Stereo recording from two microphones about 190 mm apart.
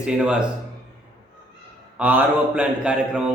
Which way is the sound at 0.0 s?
5° right (ahead or behind).